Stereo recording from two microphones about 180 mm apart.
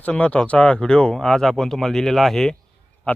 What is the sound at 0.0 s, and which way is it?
Speech, 10° left (ahead or behind).